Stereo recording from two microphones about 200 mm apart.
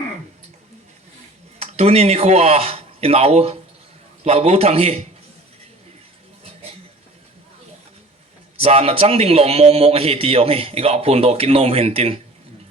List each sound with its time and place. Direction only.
1.5 s a man's voice: 30° right (ahead or behind)
8.5 s a man's voice: 30° right (ahead or behind)